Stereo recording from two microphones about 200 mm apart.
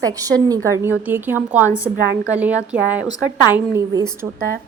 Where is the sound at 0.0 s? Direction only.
20° right (ahead or behind).